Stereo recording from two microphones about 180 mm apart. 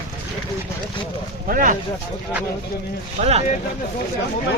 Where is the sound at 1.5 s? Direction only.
50° right (ahead or behind).